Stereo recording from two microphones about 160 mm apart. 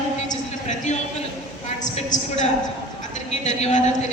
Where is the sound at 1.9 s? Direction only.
45° left (ahead or behind).